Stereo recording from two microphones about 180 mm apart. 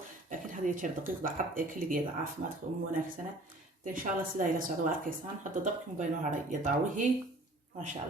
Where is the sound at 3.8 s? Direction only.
50° right (ahead or behind).